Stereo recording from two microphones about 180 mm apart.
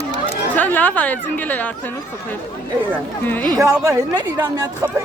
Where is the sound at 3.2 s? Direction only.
10° left (ahead or behind).